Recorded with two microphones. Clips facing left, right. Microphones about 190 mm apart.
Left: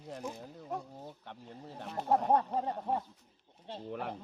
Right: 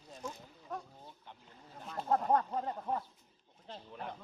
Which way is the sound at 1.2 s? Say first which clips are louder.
Left 9 dB; 70° left (ahead or behind).